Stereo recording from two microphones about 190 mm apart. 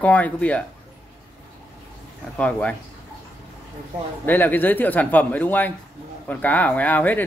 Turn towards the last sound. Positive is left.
turn(degrees=10)  # may be behind; listen again after turning